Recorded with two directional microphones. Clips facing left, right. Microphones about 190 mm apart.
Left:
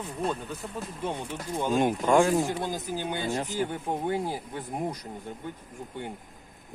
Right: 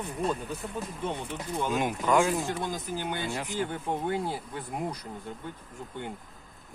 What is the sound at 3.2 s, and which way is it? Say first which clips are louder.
Speech: left 4 dB; 40° left (ahead or behind).